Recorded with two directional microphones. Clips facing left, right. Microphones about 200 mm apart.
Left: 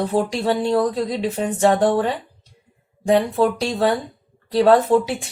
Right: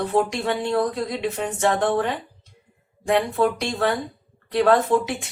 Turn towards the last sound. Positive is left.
turn(degrees=35)  # may be behind; listen again after turning